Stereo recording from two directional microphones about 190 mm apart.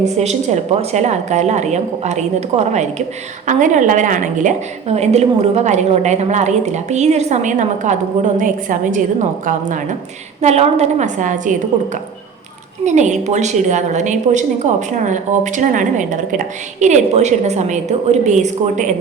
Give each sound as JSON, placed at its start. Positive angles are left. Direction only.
{"t": 0.0, "sound": "a woman's voice", "side_deg": -35}
{"t": 12.8, "sound": "a woman's voice", "side_deg": -40}